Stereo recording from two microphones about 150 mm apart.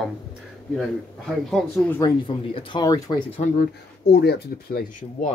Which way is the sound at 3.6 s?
90° left.